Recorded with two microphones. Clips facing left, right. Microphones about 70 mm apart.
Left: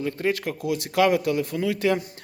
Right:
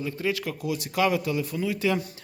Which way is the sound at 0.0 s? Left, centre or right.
Left.